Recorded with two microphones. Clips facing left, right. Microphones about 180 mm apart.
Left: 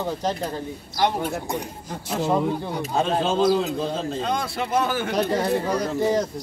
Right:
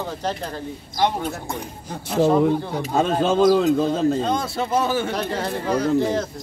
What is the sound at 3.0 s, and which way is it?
A man's voice, 45° right (ahead or behind).